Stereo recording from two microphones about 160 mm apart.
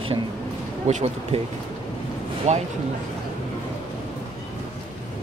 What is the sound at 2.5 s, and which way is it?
Speech, 45° right (ahead or behind).